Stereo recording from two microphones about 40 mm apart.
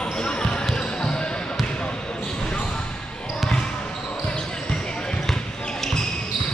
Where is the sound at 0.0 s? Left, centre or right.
Left.